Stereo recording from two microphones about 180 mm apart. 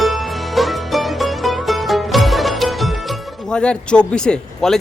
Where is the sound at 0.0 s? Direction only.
Centre (ahead or behind).